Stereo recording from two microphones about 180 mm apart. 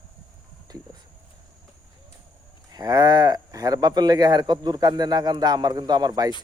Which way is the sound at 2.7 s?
20° right (ahead or behind).